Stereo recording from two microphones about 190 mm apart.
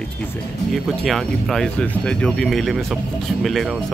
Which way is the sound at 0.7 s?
Centre (ahead or behind).